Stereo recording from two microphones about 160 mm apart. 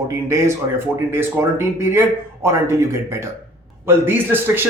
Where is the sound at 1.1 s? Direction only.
15° right (ahead or behind).